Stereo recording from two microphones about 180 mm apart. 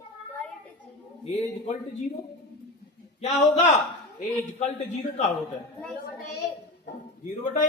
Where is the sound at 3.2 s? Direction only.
40° left (ahead or behind).